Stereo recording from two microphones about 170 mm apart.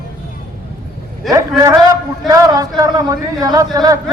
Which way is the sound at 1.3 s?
20° right (ahead or behind).